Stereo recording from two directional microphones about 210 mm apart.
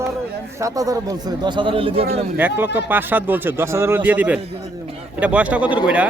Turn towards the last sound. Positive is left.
turn(degrees=-5)  # may be behind; listen again after turning